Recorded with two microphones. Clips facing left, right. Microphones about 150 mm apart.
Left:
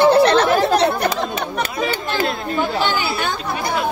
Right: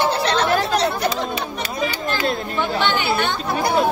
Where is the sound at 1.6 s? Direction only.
50° left (ahead or behind).